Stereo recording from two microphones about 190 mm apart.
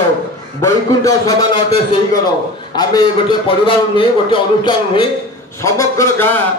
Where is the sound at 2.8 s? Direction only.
25° left (ahead or behind).